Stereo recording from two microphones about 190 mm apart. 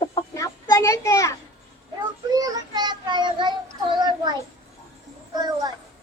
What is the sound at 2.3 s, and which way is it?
Speech, 20° right (ahead or behind).